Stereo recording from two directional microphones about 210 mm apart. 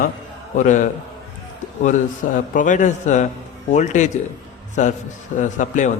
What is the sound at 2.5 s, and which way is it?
Speech, 35° left (ahead or behind).